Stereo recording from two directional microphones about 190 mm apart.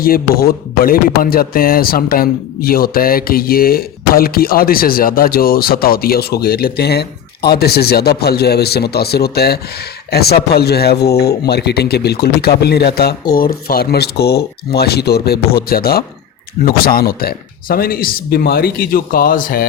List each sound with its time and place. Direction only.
0.0 s speech: 50° left (ahead or behind)